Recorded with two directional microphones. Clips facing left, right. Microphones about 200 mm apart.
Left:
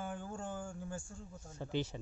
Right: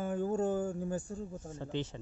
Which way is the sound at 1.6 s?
10° left (ahead or behind).